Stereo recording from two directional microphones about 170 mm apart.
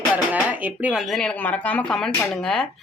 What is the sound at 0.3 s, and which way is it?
Speech, 10° right (ahead or behind).